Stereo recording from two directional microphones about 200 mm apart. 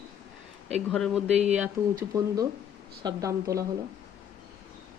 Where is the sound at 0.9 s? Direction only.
Centre (ahead or behind).